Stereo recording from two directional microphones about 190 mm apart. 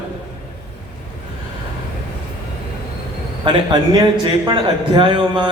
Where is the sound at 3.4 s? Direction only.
25° right (ahead or behind).